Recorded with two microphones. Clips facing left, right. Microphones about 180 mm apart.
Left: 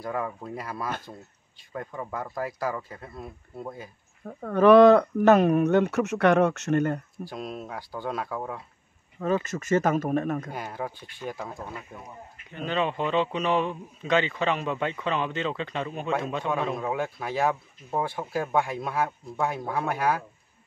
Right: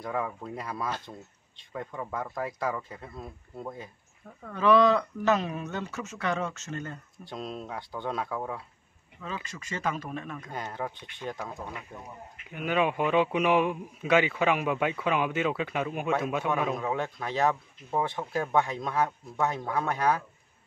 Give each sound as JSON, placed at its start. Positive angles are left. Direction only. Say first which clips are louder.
{"t": 0.0, "sound": "speech", "louder": "left 1 dB", "side_deg": 0}
{"t": 4.3, "sound": "speech", "louder": "left 7 dB", "side_deg": 50}
{"t": 7.2, "sound": "speech", "louder": "even", "side_deg": 5}
{"t": 9.2, "sound": "speech", "louder": "left 12 dB", "side_deg": 50}
{"t": 10.5, "sound": "speech", "louder": "left 1 dB", "side_deg": 5}
{"t": 12.4, "sound": "a man's voice", "louder": "right 1 dB", "side_deg": -10}
{"t": 16.7, "sound": "speech", "louder": "left 2 dB", "side_deg": 5}